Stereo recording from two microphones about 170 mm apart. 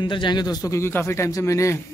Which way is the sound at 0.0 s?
25° left (ahead or behind).